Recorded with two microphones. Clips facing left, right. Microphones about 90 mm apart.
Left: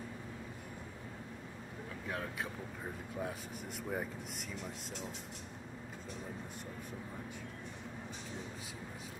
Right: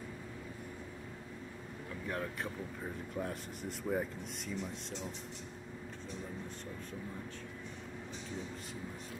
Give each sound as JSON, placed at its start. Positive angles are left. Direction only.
{"t": 2.0, "sound": "speech", "side_deg": 5}